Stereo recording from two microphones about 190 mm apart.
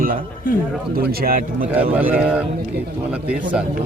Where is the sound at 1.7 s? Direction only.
10° right (ahead or behind).